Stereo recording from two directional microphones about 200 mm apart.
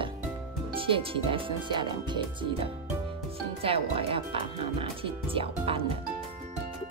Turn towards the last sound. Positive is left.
turn(degrees=-25)  # may be behind; listen again after turning